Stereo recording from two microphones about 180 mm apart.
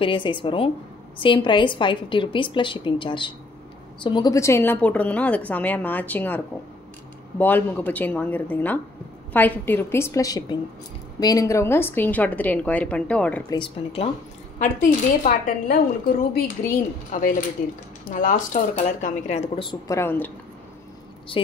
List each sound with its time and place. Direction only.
0.0 s a woman's voice: 25° left (ahead or behind); by 13.4 s 5° left (ahead or behind)
13.5 s speech: 30° left (ahead or behind)
14.6 s speech: 45° left (ahead or behind)
17.1 s speech: 50° left (ahead or behind); by 19.8 s 30° left (ahead or behind)
19.9 s a woman's voice: 15° left (ahead or behind)